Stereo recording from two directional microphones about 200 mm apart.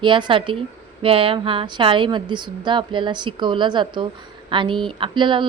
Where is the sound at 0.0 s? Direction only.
25° right (ahead or behind).